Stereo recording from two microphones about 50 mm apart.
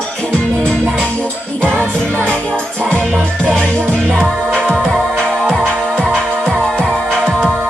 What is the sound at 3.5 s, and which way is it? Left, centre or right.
Music, left.